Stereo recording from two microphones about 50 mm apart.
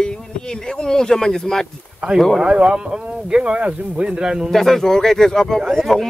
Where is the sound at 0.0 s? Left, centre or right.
Centre.